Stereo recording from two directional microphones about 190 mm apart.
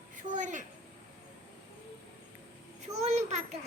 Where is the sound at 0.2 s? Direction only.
40° right (ahead or behind).